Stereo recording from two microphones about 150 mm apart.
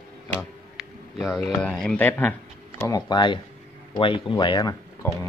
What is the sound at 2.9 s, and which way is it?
Speech, 30° left (ahead or behind).